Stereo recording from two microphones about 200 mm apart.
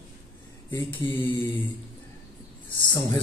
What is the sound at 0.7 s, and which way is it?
Speech, 10° left (ahead or behind).